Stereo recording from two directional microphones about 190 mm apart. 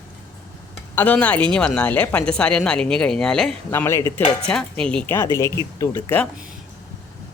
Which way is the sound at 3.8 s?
15° left (ahead or behind).